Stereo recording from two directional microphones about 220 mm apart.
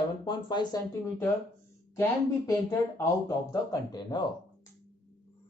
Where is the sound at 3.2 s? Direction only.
15° left (ahead or behind).